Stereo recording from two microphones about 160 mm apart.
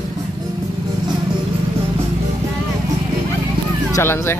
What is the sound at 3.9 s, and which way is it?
Speech, 15° left (ahead or behind).